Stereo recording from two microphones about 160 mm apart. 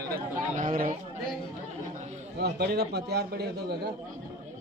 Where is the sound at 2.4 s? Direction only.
90° right.